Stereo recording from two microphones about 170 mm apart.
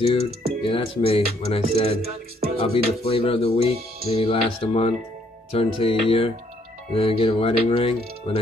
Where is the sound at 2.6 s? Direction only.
35° left (ahead or behind).